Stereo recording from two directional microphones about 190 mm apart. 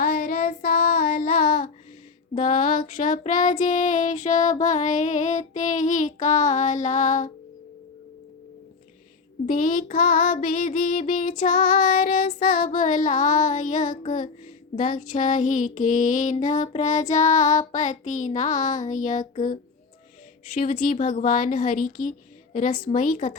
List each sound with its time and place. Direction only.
0.0 s child singing: 50° left (ahead or behind)
9.5 s child singing: 45° left (ahead or behind)
20.7 s child singing: 45° left (ahead or behind)